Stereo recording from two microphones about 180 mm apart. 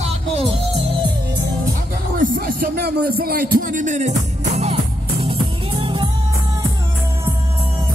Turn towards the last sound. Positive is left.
turn(degrees=-30)  # may be behind; listen again after turning